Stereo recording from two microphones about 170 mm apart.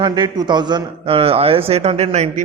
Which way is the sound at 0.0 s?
25° right (ahead or behind).